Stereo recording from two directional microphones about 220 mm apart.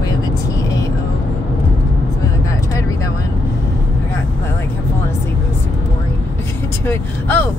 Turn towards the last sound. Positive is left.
turn(degrees=10)  # may be behind; listen again after turning